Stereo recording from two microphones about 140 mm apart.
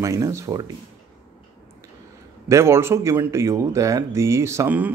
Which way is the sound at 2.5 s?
20° right (ahead or behind).